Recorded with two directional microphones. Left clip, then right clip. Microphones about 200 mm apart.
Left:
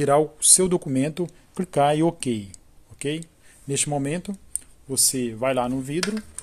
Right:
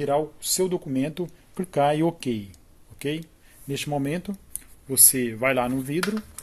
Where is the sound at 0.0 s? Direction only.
30° left (ahead or behind); by 5.9 s 5° left (ahead or behind).